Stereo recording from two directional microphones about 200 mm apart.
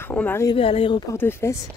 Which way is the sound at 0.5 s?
30° left (ahead or behind).